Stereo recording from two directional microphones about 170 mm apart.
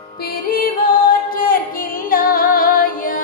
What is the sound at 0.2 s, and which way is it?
Music, 60° left (ahead or behind).